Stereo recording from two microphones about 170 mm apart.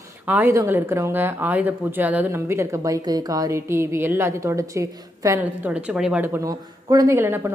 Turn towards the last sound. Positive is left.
turn(degrees=-15)  # may be behind; listen again after turning